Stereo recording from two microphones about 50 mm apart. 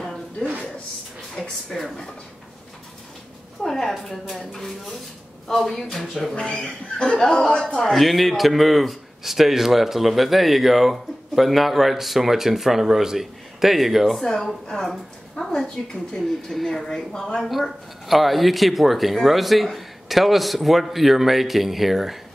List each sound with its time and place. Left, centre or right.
1.7 s a man's voice: centre
3.6 s a man's voice: centre
5.6 s a man's voice: centre
6.3 s speech: left
7.8 s a man's voice: centre
17.5 s a man's voice: centre